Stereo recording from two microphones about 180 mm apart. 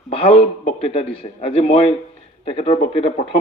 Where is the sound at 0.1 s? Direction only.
35° left (ahead or behind).